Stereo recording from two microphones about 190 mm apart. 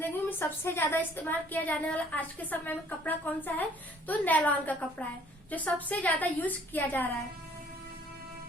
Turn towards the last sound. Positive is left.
turn(degrees=10)  # may be behind; listen again after turning